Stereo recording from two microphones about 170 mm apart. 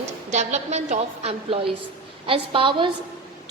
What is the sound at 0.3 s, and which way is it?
A woman's voice, 40° right (ahead or behind).